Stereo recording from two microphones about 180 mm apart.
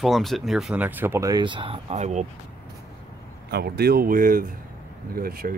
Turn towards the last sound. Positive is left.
turn(degrees=-55)  # may be behind; listen again after turning